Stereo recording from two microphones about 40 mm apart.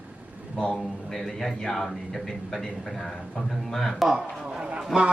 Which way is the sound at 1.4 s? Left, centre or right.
Centre.